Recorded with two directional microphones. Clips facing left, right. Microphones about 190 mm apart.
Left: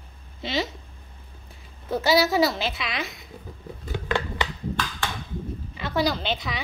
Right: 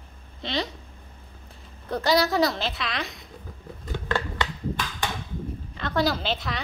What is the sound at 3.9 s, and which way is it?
Scissors, 15° left (ahead or behind).